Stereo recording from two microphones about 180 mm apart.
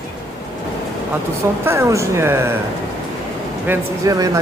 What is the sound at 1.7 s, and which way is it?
Speech, 15° right (ahead or behind).